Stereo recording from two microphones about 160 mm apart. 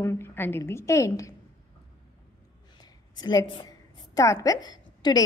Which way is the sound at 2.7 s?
25° left (ahead or behind).